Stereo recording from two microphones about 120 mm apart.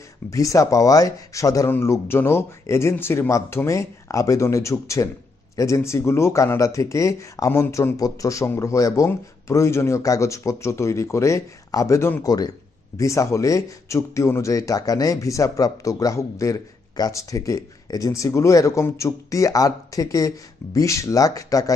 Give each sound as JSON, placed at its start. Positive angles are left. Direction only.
{"t": 0.3, "sound": "speech", "side_deg": 25}
{"t": 12.3, "sound": "speech", "side_deg": 35}